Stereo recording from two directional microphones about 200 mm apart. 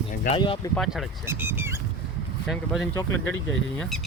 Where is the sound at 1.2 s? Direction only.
10° right (ahead or behind).